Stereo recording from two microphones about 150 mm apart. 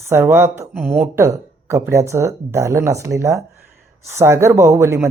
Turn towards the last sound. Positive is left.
turn(degrees=-20)  # may be behind; listen again after turning